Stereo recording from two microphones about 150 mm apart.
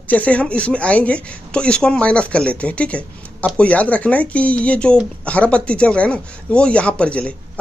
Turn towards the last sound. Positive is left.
turn(degrees=10)  # may be behind; listen again after turning